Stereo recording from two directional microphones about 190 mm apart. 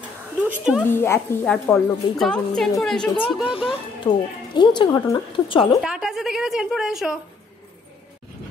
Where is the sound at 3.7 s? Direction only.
25° left (ahead or behind).